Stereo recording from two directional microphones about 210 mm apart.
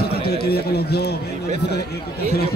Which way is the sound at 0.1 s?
50° left (ahead or behind).